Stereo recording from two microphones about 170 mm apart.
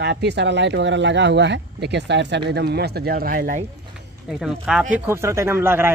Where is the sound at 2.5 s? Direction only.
70° right (ahead or behind); by 3.6 s 55° right (ahead or behind).